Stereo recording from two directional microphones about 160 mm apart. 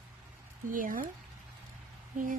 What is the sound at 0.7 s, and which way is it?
Speech, 60° right (ahead or behind).